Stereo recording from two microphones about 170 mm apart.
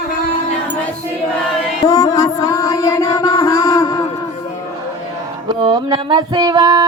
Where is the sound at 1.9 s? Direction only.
20° left (ahead or behind).